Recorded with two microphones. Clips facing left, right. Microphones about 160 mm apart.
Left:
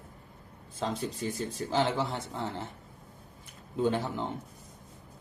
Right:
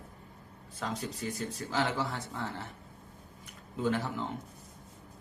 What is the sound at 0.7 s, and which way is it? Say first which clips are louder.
Speech: left 4 dB; 30° left (ahead or behind).